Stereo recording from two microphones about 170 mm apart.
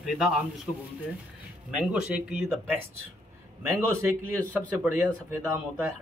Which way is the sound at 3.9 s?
15° right (ahead or behind).